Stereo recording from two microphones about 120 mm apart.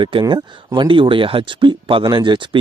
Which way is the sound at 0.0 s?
40° right (ahead or behind).